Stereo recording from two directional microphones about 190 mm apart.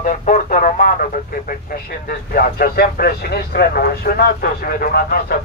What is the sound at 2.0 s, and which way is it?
Speech, 50° left (ahead or behind).